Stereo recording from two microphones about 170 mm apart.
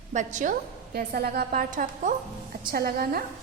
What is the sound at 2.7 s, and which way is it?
Speech, 60° right (ahead or behind).